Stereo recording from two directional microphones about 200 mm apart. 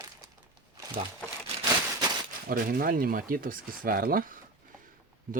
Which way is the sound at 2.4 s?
45° right (ahead or behind).